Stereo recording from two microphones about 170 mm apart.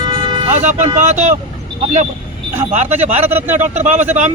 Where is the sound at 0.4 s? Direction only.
45° right (ahead or behind).